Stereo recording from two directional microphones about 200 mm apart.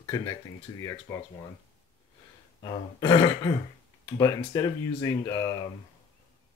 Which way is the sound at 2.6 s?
20° left (ahead or behind).